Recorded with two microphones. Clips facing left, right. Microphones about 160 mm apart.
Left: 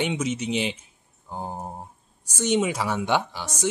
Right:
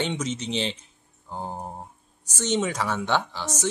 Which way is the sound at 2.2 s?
10° left (ahead or behind).